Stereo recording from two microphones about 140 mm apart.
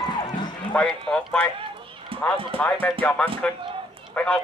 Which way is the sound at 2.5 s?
10° left (ahead or behind).